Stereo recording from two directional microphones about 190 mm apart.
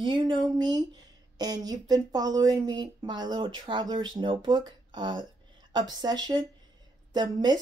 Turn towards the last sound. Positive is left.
turn(degrees=-20)  # may be behind; listen again after turning